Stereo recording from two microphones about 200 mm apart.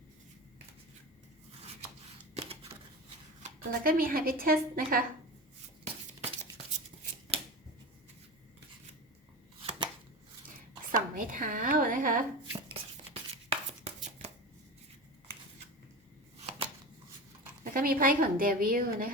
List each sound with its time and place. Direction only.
2.3 s scissors: 30° right (ahead or behind)
3.4 s speech: 45° right (ahead or behind)
7.3 s a sound: 30° right (ahead or behind)
9.6 s chopping: 25° right (ahead or behind)
10.9 s a sound: 40° right (ahead or behind)
13.3 s chopping: 30° right (ahead or behind)
17.6 s speech: 45° right (ahead or behind)